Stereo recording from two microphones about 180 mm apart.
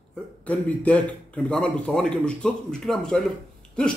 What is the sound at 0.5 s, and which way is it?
A man's voice, 5° left (ahead or behind).